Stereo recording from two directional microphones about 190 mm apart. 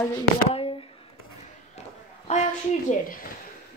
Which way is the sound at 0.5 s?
30° left (ahead or behind).